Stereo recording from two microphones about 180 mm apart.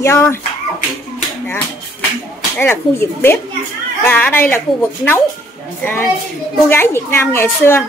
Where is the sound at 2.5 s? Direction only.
15° left (ahead or behind).